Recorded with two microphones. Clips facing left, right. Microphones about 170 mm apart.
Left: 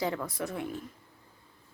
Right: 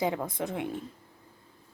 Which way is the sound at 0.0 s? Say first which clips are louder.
Right 2 dB; 20° right (ahead or behind).